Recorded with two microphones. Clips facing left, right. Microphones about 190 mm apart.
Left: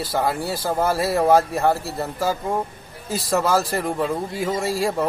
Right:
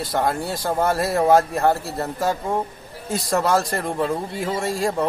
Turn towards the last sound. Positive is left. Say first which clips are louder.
# even
turn(degrees=0)  # may be behind; listen again after turning